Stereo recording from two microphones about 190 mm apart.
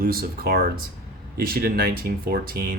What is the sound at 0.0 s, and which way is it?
Speech, 50° right (ahead or behind).